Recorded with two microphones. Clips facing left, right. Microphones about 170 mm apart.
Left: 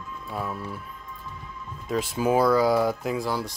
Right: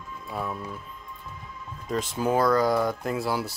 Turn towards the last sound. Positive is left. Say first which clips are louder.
# even
turn(degrees=-5)  # may be behind; listen again after turning